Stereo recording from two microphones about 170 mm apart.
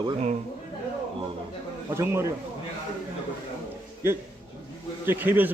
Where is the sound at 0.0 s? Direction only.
40° right (ahead or behind).